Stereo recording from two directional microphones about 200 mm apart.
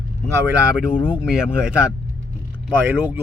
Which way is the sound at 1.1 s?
5° right (ahead or behind).